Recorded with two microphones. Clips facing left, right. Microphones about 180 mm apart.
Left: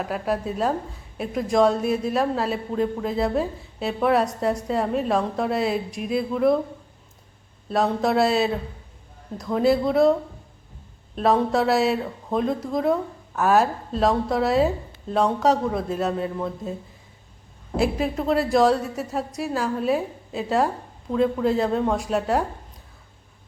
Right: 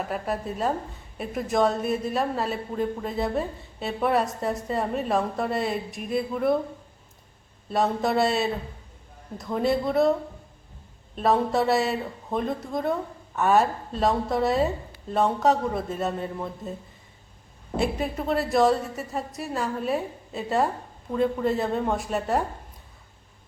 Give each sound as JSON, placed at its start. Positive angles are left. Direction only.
{"t": 0.0, "sound": "a man's voice", "side_deg": 0}
{"t": 7.7, "sound": "a man's voice", "side_deg": 0}
{"t": 17.7, "sound": "a man's voice", "side_deg": 0}